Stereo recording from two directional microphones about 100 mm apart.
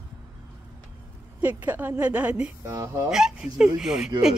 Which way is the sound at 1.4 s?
15° right (ahead or behind).